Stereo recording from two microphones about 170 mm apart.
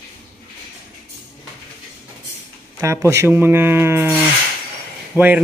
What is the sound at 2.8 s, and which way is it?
Speech, 15° right (ahead or behind).